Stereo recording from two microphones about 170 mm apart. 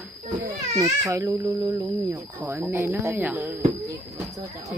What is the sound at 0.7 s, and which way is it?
Speech, 20° right (ahead or behind).